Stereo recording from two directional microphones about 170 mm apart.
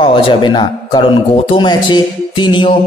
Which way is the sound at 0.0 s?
30° left (ahead or behind).